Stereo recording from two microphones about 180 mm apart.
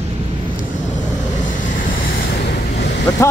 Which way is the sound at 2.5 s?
70° left (ahead or behind).